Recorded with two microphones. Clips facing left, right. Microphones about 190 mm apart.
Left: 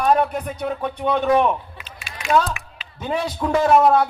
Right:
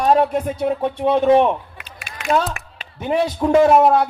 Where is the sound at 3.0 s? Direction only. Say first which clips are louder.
Right 5 dB; 25° right (ahead or behind).